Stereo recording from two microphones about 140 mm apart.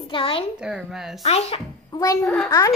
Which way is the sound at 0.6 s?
5° right (ahead or behind).